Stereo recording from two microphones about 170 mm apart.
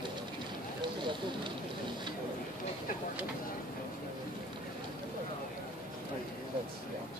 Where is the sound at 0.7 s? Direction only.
30° right (ahead or behind).